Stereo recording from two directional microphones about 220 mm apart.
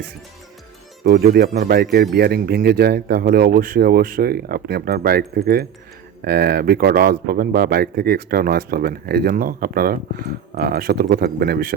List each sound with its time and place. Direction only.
1.0 s speech: 45° right (ahead or behind)